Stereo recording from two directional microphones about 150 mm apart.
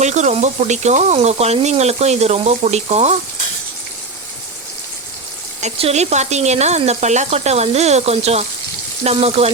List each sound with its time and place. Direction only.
0.0 s speech: 50° right (ahead or behind)
5.5 s speech: 45° right (ahead or behind)